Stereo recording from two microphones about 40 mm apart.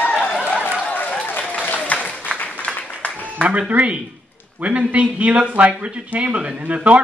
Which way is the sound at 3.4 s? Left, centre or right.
Right.